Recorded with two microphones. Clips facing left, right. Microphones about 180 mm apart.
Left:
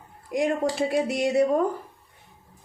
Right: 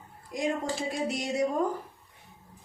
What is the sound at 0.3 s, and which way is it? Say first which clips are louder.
Speech: left 6 dB; 65° left (ahead or behind).